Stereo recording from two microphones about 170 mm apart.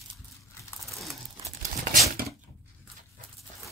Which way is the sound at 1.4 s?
50° right (ahead or behind).